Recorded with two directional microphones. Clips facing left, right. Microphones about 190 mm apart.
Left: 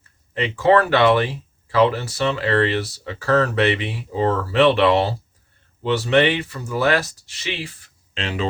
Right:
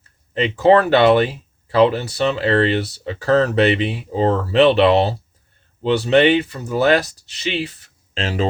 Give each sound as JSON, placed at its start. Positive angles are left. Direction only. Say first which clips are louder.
{"t": 0.3, "sound": "speech", "louder": "right 3 dB", "side_deg": -25}
{"t": 8.1, "sound": "speech", "louder": "right 4 dB", "side_deg": -40}